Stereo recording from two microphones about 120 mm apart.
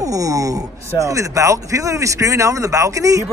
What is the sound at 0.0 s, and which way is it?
Speech, 30° right (ahead or behind).